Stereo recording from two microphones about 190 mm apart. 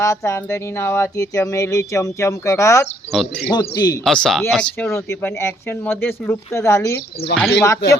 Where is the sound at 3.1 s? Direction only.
Centre (ahead or behind).